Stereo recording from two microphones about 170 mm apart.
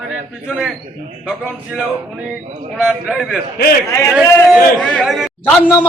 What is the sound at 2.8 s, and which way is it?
Speech, centre (ahead or behind).